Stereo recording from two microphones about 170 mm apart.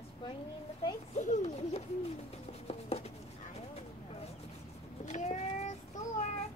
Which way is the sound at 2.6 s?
35° left (ahead or behind).